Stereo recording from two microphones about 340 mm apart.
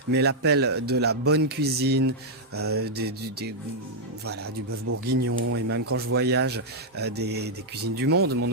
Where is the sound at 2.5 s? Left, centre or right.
Right.